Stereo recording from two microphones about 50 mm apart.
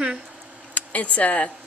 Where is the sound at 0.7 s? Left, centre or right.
Left.